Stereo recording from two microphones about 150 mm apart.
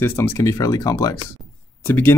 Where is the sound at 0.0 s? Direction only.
15° left (ahead or behind).